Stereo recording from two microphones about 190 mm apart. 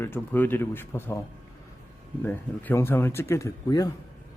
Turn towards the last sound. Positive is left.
turn(degrees=20)  # may be behind; listen again after turning